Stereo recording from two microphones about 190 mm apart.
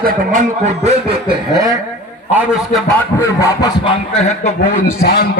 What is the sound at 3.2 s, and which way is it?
Speech, 20° left (ahead or behind).